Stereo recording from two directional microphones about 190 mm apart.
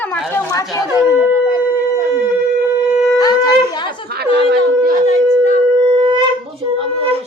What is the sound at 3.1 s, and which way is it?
Shofar, 20° left (ahead or behind).